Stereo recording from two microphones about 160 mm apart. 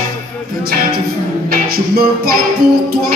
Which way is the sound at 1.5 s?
70° right (ahead or behind).